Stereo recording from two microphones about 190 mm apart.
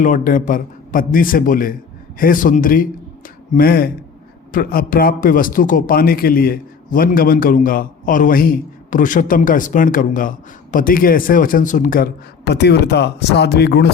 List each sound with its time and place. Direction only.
0.0 s a man's voice: 45° left (ahead or behind); by 13.8 s 60° left (ahead or behind)